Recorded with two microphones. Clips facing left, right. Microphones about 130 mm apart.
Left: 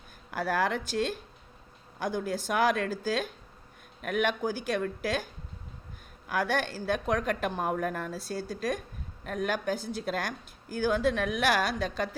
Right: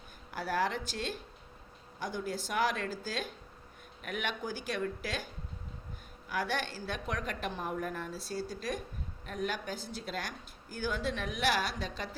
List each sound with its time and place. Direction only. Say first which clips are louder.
0.3 s a woman's voice: left 4 dB; 50° left (ahead or behind)
8.1 s a woman's voice: left 3 dB; 50° left (ahead or behind)